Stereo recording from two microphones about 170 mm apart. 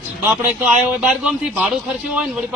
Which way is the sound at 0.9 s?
5° right (ahead or behind).